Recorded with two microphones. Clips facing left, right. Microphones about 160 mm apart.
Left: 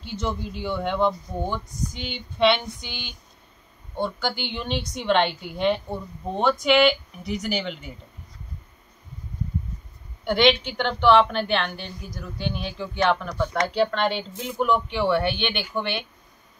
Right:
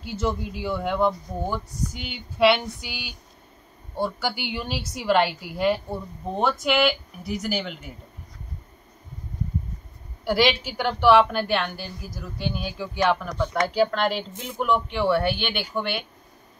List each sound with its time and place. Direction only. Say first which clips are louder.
0.0 s a woman's voice: right 2 dB; 5° right (ahead or behind)
10.2 s a woman's voice: left 2 dB; 5° right (ahead or behind)